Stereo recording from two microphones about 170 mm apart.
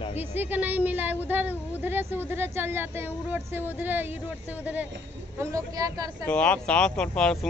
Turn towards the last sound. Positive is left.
turn(degrees=5)  # may be behind; listen again after turning